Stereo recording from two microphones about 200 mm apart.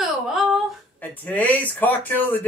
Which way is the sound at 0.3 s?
Centre (ahead or behind).